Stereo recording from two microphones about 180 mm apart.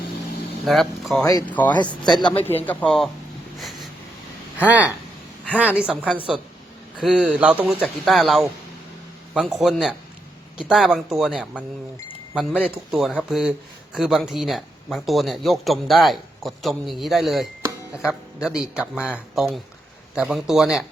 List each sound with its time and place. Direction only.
0.6 s speech: centre (ahead or behind)
1.2 s speech: 20° left (ahead or behind)
1.5 s speech: 10° left (ahead or behind)
4.5 s a woman's voice: 10° right (ahead or behind)
12.6 s speech: centre (ahead or behind)